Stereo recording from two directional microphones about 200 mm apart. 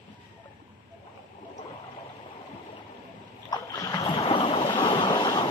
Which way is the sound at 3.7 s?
20° left (ahead or behind).